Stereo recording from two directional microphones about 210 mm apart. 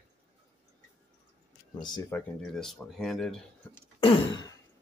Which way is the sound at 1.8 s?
20° left (ahead or behind).